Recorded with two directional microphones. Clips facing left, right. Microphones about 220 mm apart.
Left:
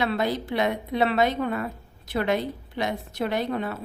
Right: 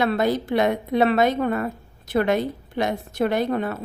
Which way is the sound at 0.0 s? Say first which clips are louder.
Right 4 dB; 50° right (ahead or behind).